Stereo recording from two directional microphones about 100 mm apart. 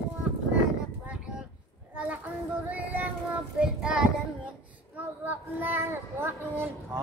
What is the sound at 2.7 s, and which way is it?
Child singing, 15° right (ahead or behind).